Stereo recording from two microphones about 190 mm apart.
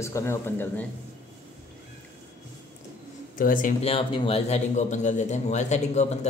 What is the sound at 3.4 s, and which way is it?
Speech, 45° left (ahead or behind).